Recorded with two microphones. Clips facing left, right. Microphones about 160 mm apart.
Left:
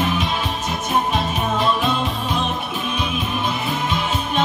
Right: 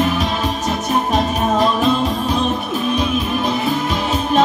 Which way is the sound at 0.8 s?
40° right (ahead or behind).